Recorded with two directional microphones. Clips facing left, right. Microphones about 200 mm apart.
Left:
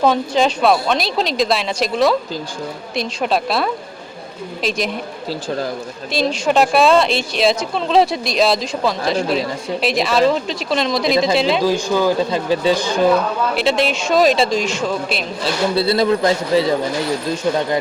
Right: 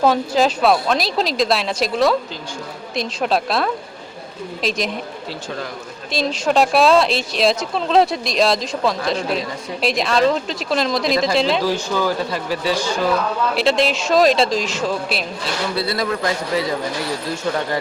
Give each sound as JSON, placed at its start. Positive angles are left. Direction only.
{"t": 0.0, "sound": "a woman's voice", "side_deg": 0}
{"t": 6.1, "sound": "a woman's voice", "side_deg": 0}
{"t": 11.6, "sound": "speech", "side_deg": 15}
{"t": 13.6, "sound": "a woman's voice", "side_deg": 0}
{"t": 15.7, "sound": "speech", "side_deg": 25}